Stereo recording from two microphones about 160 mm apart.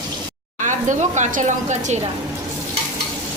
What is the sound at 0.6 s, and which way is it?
Speech, 50° right (ahead or behind).